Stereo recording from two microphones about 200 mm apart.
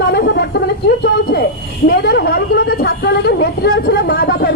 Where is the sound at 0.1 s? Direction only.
55° left (ahead or behind).